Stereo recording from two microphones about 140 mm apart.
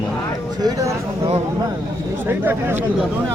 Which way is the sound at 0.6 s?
25° right (ahead or behind).